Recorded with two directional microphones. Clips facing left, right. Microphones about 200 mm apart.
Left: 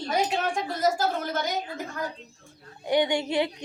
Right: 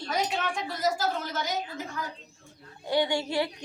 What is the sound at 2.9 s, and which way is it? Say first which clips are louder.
Speech: left 3 dB; 20° left (ahead or behind).